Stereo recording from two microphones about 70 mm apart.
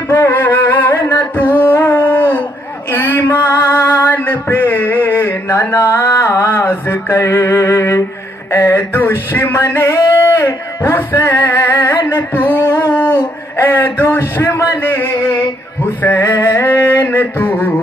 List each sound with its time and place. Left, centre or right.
0.1 s music: left
1.3 s a sound: left
2.9 s male singing: left
5.5 s mantra: left
7.4 s music: left
8.5 s male singing: left
10.9 s music: left
12.0 s a sound: left
16.1 s a sound: left